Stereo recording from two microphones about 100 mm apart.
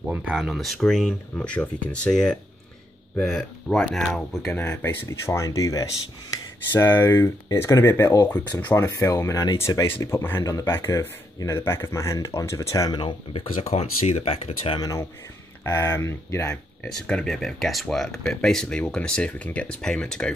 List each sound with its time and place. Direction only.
0.1 s speech: 5° right (ahead or behind)
4.6 s speech: 25° left (ahead or behind)
10.0 s speech: 25° left (ahead or behind)
12.9 s speech: 55° left (ahead or behind); by 14.8 s 70° left (ahead or behind)
14.8 s speech: 35° left (ahead or behind)
17.0 s speech: 10° left (ahead or behind)